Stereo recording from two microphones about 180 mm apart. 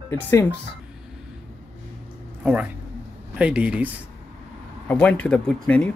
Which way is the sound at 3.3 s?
5° right (ahead or behind).